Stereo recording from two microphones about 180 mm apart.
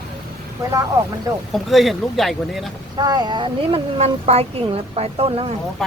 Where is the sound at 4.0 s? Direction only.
35° right (ahead or behind).